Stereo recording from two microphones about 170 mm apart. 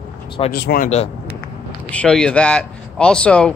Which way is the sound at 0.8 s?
40° left (ahead or behind).